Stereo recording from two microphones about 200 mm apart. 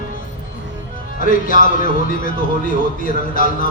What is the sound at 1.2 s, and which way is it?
A man's voice, 40° left (ahead or behind).